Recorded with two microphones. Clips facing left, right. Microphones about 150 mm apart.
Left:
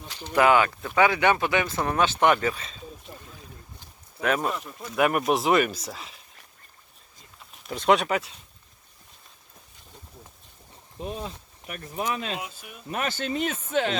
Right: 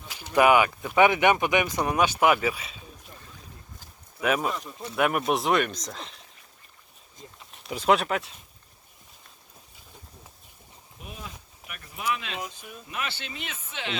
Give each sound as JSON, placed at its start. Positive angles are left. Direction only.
{"t": 0.1, "sound": "speech", "side_deg": -10}
{"t": 3.1, "sound": "boat", "side_deg": 20}
{"t": 4.2, "sound": "speech", "side_deg": -5}
{"t": 7.7, "sound": "speech", "side_deg": -5}
{"t": 11.0, "sound": "speech", "side_deg": 35}
{"t": 12.4, "sound": "speech", "side_deg": 5}
{"t": 12.9, "sound": "speech", "side_deg": 45}